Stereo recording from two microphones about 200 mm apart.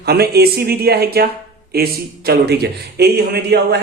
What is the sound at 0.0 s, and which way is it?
A man's voice, 50° right (ahead or behind).